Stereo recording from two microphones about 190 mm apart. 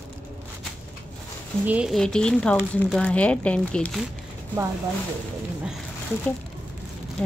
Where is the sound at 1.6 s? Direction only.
5° right (ahead or behind).